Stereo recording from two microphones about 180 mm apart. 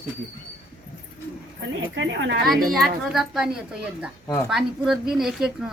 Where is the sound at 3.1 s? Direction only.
Centre (ahead or behind).